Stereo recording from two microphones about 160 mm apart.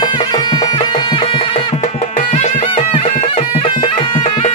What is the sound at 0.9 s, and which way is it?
Music, 30° left (ahead or behind).